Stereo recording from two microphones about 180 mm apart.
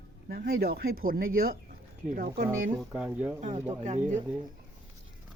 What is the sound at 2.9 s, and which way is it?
Speech, 10° right (ahead or behind).